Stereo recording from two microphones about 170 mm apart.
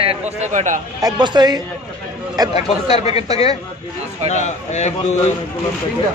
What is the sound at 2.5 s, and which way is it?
Speech, 40° left (ahead or behind).